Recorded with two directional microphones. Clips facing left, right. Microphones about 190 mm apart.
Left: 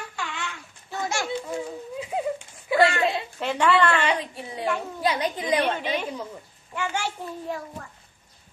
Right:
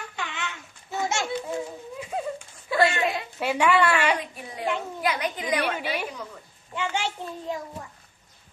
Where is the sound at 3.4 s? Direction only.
10° right (ahead or behind).